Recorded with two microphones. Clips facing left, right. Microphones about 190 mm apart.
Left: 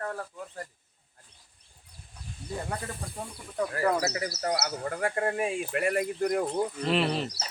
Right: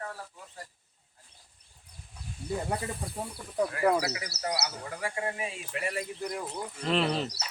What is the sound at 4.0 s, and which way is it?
Speech, 45° left (ahead or behind).